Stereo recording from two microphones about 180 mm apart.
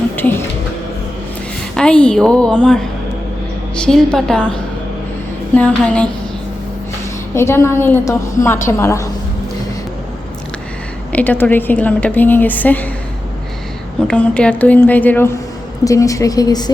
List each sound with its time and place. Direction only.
0.2 s a sound: 10° left (ahead or behind)
1.7 s a woman's voice: 5° left (ahead or behind)
5.5 s a woman's voice: 5° left (ahead or behind)
7.3 s a woman's voice: 15° left (ahead or behind)
11.1 s a woman's voice: 10° left (ahead or behind)
14.1 s a woman's voice: 5° left (ahead or behind); by 16.7 s 20° left (ahead or behind)